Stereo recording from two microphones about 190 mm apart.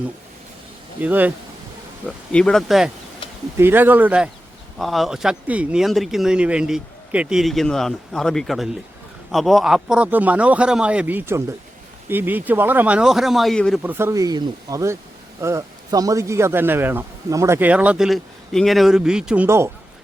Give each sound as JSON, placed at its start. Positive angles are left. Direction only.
{"t": 1.0, "sound": "a man's voice", "side_deg": -10}
{"t": 2.0, "sound": "a man's voice", "side_deg": 5}
{"t": 13.8, "sound": "a man's voice", "side_deg": -15}